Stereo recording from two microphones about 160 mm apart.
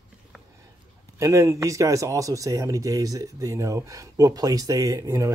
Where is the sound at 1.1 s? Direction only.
20° right (ahead or behind).